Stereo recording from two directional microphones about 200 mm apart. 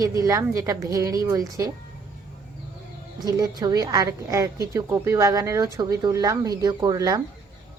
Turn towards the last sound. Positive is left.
turn(degrees=-20)  # may be behind; listen again after turning